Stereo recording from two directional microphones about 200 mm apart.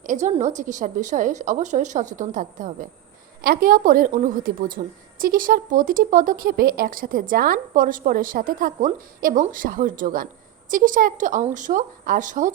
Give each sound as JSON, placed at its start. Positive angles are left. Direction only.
{"t": 0.0, "sound": "a woman's voice", "side_deg": -40}